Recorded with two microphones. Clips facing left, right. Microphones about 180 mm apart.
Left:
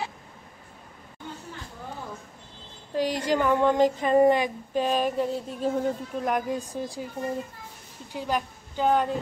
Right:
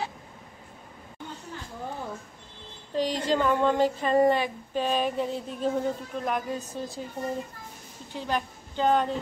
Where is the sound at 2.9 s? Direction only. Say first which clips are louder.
Left 1 dB; 10° left (ahead or behind).